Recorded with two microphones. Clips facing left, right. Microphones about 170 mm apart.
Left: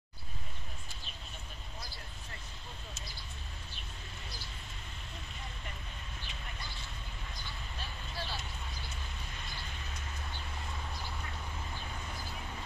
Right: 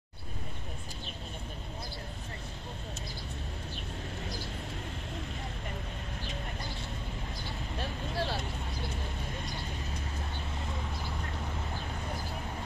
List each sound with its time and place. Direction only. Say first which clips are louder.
7.8 s vehicle: right 9 dB; 75° right (ahead or behind)